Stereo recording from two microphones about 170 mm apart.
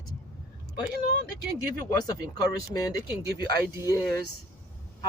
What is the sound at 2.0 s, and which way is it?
Speech, 20° left (ahead or behind).